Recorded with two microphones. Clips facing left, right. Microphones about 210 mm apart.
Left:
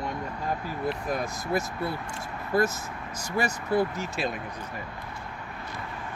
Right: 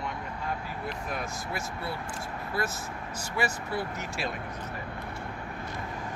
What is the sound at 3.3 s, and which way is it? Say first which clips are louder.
Speech: left 6 dB; 40° left (ahead or behind).